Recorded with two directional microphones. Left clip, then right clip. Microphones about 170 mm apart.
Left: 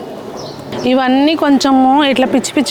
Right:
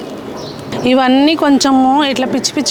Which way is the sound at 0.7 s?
Centre (ahead or behind).